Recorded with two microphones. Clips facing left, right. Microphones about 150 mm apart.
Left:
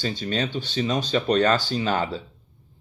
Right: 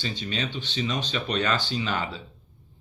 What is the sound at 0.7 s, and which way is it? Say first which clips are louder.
Speech: left 5 dB; 35° left (ahead or behind).